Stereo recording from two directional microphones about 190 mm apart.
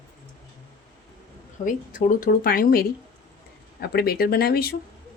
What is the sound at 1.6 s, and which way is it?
Speech, 45° left (ahead or behind).